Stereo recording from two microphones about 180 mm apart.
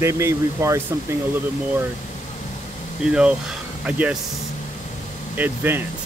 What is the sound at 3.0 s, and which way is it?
Speech, 5° right (ahead or behind).